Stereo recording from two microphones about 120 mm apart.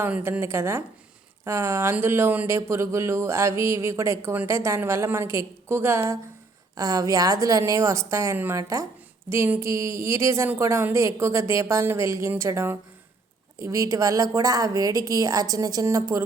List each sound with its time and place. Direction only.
0.0 s speech: 15° right (ahead or behind)